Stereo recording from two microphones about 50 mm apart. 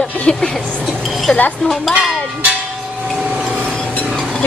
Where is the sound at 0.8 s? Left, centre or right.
Centre.